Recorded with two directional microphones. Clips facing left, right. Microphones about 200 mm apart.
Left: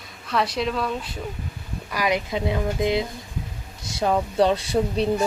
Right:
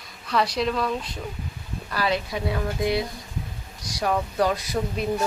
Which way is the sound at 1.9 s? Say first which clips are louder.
Left 2 dB; 15° left (ahead or behind).